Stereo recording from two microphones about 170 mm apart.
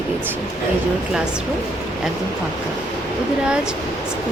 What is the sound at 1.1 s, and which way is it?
Speech, 5° right (ahead or behind).